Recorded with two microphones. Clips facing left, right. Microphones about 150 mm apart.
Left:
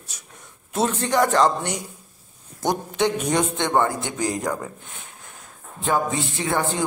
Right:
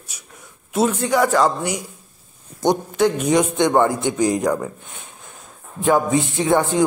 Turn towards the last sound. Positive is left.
turn(degrees=-15)  # may be behind; listen again after turning